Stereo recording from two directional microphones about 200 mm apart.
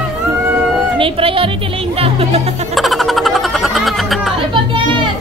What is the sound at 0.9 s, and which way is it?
Speech, 25° right (ahead or behind).